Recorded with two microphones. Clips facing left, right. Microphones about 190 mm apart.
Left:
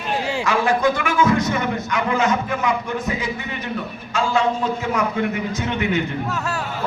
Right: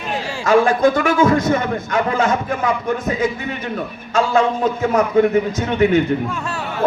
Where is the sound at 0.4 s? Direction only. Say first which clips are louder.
Right 7 dB; 45° right (ahead or behind).